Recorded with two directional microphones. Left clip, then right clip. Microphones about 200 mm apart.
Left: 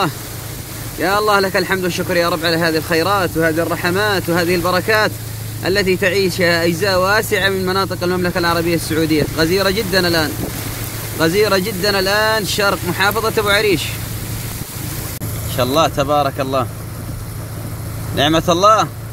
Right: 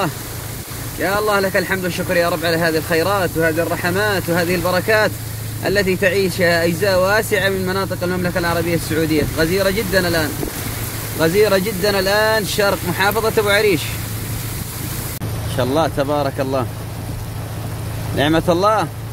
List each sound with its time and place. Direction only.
1.0 s speech: 20° left (ahead or behind)
11.1 s speech: 5° left (ahead or behind)
15.5 s speech: 5° left (ahead or behind)
18.1 s speech: centre (ahead or behind)